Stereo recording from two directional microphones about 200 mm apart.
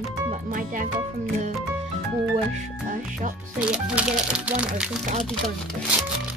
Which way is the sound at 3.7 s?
5° right (ahead or behind).